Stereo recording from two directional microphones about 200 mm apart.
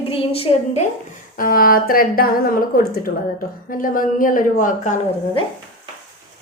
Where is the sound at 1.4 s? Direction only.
45° left (ahead or behind).